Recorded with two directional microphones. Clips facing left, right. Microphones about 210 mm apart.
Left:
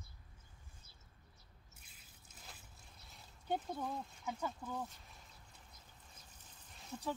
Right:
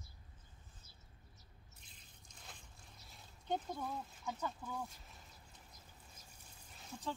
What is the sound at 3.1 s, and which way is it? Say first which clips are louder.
Speech: even; 5° left (ahead or behind).